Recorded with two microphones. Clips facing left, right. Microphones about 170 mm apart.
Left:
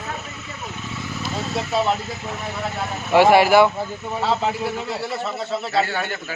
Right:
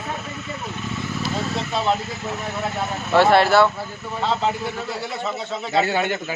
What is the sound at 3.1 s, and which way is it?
Speech, 10° left (ahead or behind).